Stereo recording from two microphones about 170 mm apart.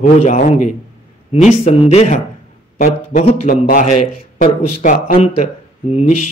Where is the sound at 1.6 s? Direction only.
35° left (ahead or behind).